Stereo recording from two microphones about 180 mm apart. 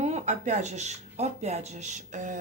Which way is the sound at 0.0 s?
40° right (ahead or behind).